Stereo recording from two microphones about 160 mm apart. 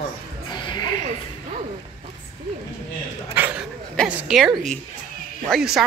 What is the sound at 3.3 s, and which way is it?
Dog, 10° right (ahead or behind).